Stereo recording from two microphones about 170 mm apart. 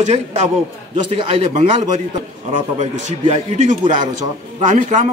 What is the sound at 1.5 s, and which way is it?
A man's voice, 45° right (ahead or behind).